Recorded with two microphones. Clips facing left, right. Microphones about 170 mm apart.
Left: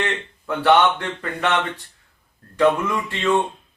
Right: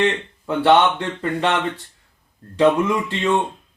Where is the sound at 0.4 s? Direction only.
25° right (ahead or behind).